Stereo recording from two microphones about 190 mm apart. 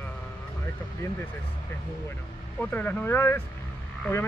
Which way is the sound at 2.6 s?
10° left (ahead or behind).